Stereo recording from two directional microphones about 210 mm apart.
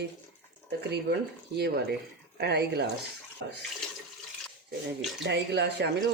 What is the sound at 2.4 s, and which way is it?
Speech, 50° right (ahead or behind).